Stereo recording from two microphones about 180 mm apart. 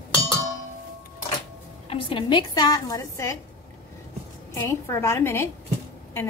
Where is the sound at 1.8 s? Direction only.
30° left (ahead or behind).